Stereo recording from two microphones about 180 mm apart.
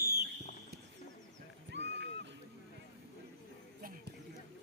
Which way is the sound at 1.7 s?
75° right (ahead or behind).